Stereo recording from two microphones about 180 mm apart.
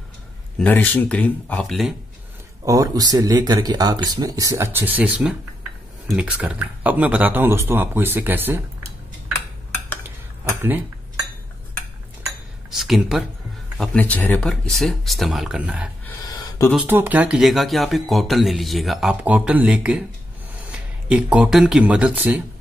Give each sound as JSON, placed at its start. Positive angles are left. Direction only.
{"t": 0.6, "sound": "speech", "side_deg": 10}
{"t": 2.6, "sound": "speech", "side_deg": -20}
{"t": 12.7, "sound": "speech", "side_deg": 0}
{"t": 16.3, "sound": "a sound", "side_deg": 15}
{"t": 16.7, "sound": "speech", "side_deg": -10}